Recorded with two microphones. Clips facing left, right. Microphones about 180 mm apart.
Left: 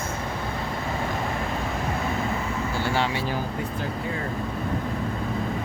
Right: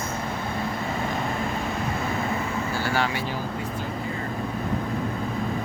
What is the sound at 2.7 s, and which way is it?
Speech, 25° left (ahead or behind).